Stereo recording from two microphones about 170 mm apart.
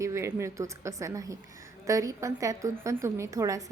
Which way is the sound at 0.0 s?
15° right (ahead or behind).